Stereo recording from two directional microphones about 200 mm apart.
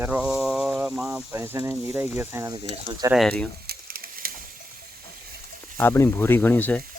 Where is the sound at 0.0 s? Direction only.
5° right (ahead or behind).